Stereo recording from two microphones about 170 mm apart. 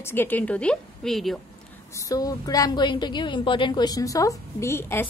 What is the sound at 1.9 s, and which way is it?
A woman's voice, 20° left (ahead or behind).